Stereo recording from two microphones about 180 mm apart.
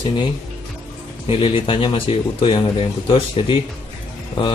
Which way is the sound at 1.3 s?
30° left (ahead or behind).